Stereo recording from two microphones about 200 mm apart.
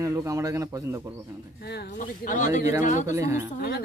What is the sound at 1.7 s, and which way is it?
Speech, 55° left (ahead or behind).